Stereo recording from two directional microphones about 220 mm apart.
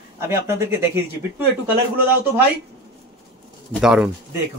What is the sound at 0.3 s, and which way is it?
Speech, 10° right (ahead or behind).